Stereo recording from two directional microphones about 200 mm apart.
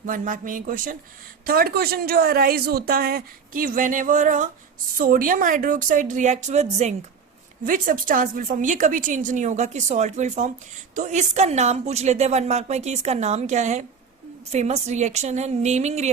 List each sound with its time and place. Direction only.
0.0 s a woman's voice: 40° right (ahead or behind)